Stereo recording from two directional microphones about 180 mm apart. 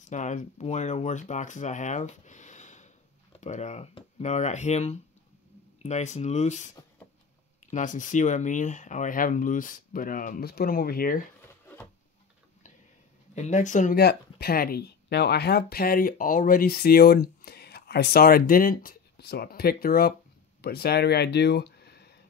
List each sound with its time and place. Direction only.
0.0 s speech: 45° left (ahead or behind)
7.7 s speech: 45° left (ahead or behind)
13.3 s speech: 40° left (ahead or behind)
13.9 s speech: 60° left (ahead or behind)